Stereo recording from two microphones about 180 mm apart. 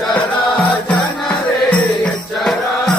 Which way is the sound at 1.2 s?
5° left (ahead or behind).